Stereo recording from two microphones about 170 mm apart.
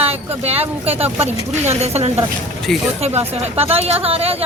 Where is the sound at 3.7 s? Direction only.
35° right (ahead or behind).